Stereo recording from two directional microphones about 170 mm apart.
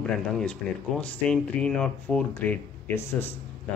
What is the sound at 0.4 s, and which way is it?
Speech, 5° left (ahead or behind).